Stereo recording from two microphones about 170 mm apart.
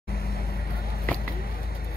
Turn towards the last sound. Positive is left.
turn(degrees=65)  # may be behind; listen again after turning